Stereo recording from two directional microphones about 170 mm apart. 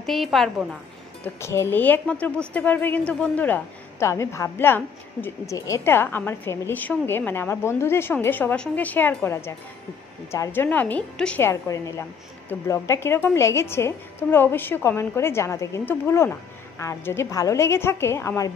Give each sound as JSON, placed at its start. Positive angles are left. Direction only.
{"t": 0.0, "sound": "a woman's voice", "side_deg": 0}
{"t": 1.2, "sound": "a woman's voice", "side_deg": 15}